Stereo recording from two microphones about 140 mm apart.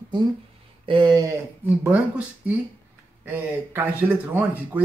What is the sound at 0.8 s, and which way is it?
Speech, 35° right (ahead or behind).